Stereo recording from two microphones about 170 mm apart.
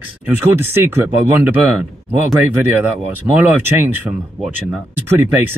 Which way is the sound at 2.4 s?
10° right (ahead or behind).